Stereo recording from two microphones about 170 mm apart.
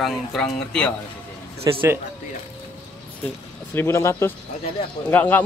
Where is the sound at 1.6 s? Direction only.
15° right (ahead or behind).